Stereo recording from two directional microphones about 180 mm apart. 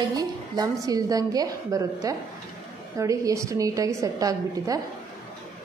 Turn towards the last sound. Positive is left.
turn(degrees=-20)  # may be behind; listen again after turning